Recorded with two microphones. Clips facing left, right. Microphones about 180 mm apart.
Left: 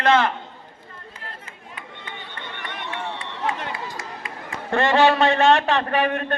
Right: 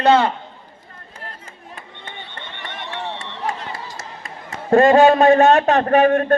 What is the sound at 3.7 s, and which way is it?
A man's voice, 45° right (ahead or behind).